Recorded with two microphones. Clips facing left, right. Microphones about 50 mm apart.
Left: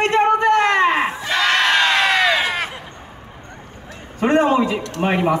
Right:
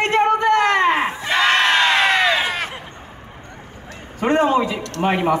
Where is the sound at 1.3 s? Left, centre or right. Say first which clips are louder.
Right 2 dB; centre.